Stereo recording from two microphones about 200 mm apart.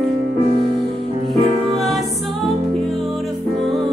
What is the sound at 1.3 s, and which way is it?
Music, centre (ahead or behind).